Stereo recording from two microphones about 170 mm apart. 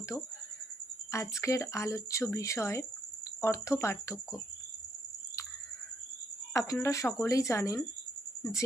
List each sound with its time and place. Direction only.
1.1 s speech: 15° left (ahead or behind)
6.5 s speech: 20° left (ahead or behind)